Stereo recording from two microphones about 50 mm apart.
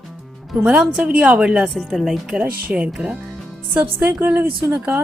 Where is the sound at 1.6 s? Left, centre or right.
Centre.